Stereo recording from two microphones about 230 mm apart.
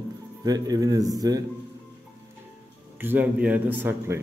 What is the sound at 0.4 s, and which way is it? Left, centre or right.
Speech, centre.